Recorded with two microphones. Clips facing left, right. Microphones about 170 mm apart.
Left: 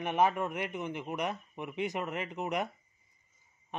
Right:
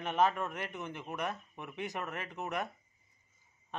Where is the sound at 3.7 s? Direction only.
15° left (ahead or behind).